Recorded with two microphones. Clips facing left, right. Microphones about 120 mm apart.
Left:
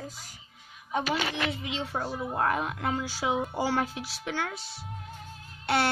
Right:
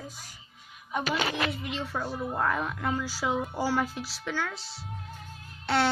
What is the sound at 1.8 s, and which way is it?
Speech, 25° left (ahead or behind).